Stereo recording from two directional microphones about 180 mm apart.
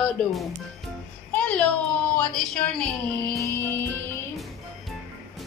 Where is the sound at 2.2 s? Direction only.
5° left (ahead or behind).